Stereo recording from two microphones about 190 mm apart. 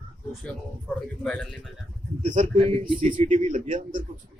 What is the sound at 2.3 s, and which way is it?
Speech, 35° right (ahead or behind).